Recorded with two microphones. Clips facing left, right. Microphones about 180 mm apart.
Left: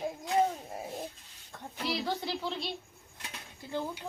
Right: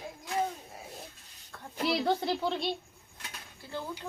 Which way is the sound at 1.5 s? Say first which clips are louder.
Left 2 dB; 20° left (ahead or behind).